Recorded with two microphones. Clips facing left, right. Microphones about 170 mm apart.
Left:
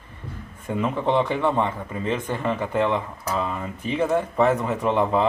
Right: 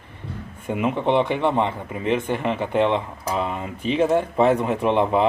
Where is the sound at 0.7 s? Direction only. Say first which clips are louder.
Right 2 dB; 20° right (ahead or behind).